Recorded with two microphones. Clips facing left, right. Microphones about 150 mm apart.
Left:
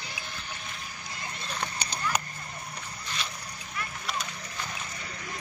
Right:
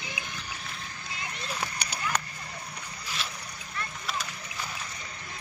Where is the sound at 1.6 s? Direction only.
10° right (ahead or behind).